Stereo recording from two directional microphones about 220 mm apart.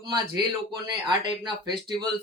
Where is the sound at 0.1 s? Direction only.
20° right (ahead or behind).